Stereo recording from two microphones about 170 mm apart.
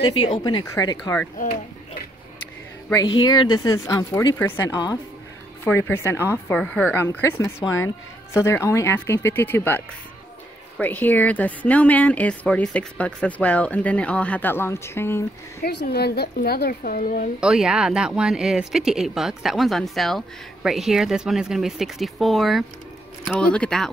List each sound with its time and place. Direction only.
0.0 s a woman's voice: 30° left (ahead or behind); by 1.3 s 15° left (ahead or behind)
3.2 s a woman's voice: 25° left (ahead or behind)
15.6 s a woman's voice: 70° left (ahead or behind); by 17.3 s 55° left (ahead or behind)
17.4 s speech: 5° right (ahead or behind)